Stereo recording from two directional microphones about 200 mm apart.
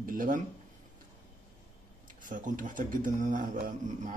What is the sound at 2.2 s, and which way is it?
Speech, 40° right (ahead or behind).